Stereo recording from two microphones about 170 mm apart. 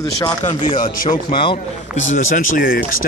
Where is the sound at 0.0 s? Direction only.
20° left (ahead or behind).